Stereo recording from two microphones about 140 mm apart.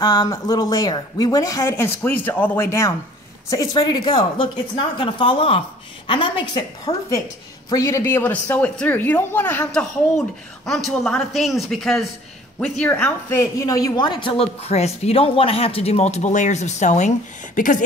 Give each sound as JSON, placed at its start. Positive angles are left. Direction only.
{"t": 0.0, "sound": "a woman's voice", "side_deg": 30}
{"t": 13.4, "sound": "speech", "side_deg": 25}
{"t": 14.4, "sound": "speech", "side_deg": 45}
{"t": 17.6, "sound": "speech", "side_deg": 65}